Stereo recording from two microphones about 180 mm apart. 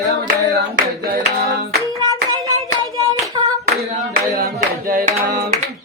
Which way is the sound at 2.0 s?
20° right (ahead or behind).